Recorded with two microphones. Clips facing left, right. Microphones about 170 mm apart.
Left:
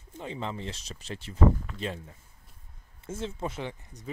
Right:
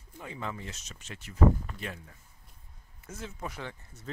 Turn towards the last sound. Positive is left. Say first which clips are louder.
# left 4 dB
turn(degrees=15)  # may be behind; listen again after turning